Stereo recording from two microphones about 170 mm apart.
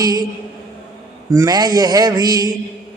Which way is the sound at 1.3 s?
20° right (ahead or behind).